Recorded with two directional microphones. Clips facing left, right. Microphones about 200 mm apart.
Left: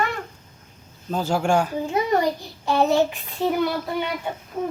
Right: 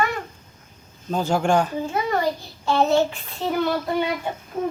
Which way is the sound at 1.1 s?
5° left (ahead or behind).